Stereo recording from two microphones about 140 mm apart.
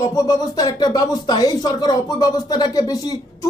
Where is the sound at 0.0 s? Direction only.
25° left (ahead or behind).